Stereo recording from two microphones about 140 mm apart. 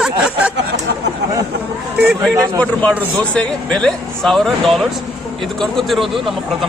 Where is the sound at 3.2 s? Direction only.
5° left (ahead or behind).